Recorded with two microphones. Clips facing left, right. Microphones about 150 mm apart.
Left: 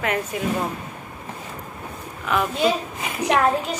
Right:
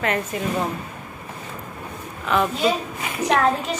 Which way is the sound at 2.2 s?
5° left (ahead or behind).